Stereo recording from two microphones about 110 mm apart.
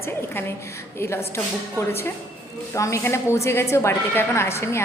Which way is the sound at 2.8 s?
30° left (ahead or behind).